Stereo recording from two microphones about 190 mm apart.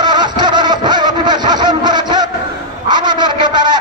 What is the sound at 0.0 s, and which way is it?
Vehicle, 20° right (ahead or behind).